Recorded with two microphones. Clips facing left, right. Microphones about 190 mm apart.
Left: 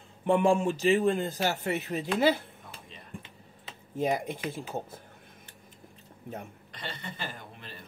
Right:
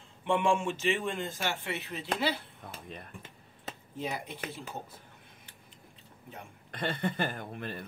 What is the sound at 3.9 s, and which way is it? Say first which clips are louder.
Speech: left 9 dB; 45° left (ahead or behind).